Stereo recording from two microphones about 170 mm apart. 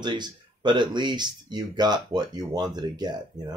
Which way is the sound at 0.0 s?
25° right (ahead or behind).